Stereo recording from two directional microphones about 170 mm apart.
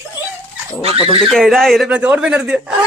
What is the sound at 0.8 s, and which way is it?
Speech, 35° right (ahead or behind).